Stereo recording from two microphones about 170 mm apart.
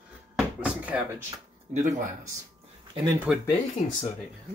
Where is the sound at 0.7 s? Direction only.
10° right (ahead or behind).